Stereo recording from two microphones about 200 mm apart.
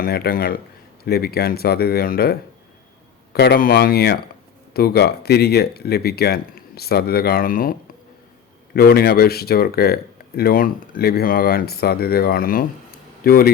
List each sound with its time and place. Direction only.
0.0 s speech: 50° left (ahead or behind)